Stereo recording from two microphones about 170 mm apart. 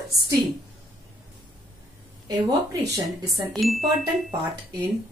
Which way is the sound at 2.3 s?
20° right (ahead or behind).